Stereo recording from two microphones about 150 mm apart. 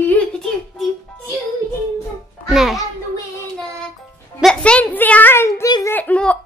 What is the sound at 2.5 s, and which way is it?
Music, centre (ahead or behind).